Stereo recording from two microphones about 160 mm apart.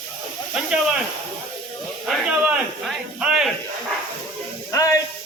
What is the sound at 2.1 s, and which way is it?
Speech, 5° right (ahead or behind).